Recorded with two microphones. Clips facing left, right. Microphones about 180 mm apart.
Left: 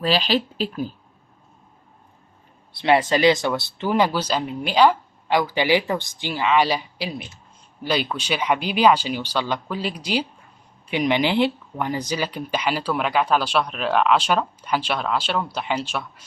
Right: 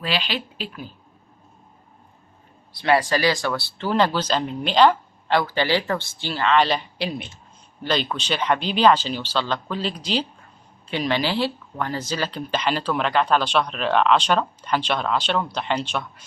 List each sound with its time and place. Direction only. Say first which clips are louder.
0.0 s speech: left 6 dB; 40° left (ahead or behind)
2.7 s speech: left 1 dB; 25° left (ahead or behind); by 16.2 s 5° left (ahead or behind)